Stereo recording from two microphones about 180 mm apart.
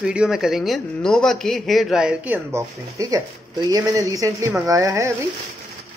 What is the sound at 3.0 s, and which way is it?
Speech, 20° right (ahead or behind).